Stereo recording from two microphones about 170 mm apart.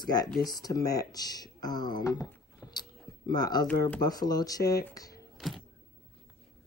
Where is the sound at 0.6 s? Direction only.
20° left (ahead or behind).